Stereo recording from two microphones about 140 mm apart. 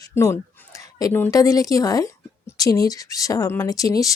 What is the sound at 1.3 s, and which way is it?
A woman's voice, 25° left (ahead or behind).